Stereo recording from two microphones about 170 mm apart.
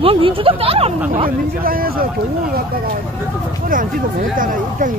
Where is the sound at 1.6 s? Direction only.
60° right (ahead or behind).